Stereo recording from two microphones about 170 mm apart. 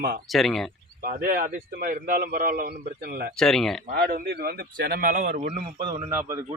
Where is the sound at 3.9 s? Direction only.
65° right (ahead or behind).